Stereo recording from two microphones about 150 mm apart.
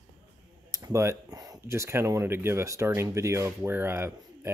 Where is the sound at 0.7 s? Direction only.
25° right (ahead or behind).